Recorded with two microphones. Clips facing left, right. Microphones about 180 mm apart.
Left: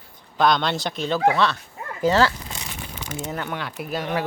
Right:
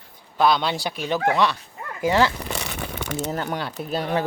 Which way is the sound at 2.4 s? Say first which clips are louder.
Right 6 dB; 65° right (ahead or behind).